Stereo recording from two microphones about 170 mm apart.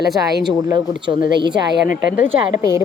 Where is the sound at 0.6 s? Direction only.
25° right (ahead or behind).